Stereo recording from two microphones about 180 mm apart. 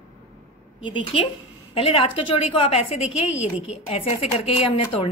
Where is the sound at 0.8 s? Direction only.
30° left (ahead or behind).